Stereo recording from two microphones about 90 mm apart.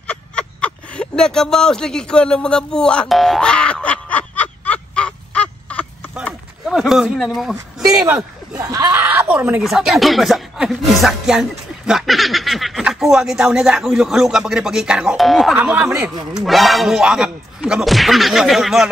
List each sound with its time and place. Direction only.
0.0 s speech: 15° left (ahead or behind)
3.1 s boing: centre (ahead or behind)
6.6 s speech: 5° right (ahead or behind)
8.6 s speech: 45° right (ahead or behind)
8.9 s a sound: 25° right (ahead or behind)
9.3 s speech: 15° right (ahead or behind)
9.6 s speech: 5° right (ahead or behind)
15.5 s speech: 15° right (ahead or behind)
16.4 s speech: centre (ahead or behind)